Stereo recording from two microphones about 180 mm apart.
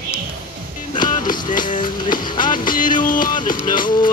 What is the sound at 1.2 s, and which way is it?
Music, 25° left (ahead or behind).